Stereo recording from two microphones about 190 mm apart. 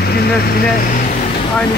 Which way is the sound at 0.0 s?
55° left (ahead or behind).